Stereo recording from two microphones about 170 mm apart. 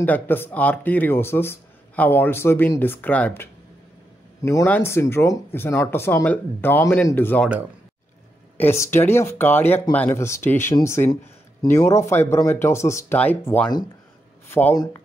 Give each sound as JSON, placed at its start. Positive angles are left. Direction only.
{"t": 0.0, "sound": "speech", "side_deg": 10}
{"t": 4.5, "sound": "speech", "side_deg": 15}
{"t": 8.5, "sound": "speech", "side_deg": 15}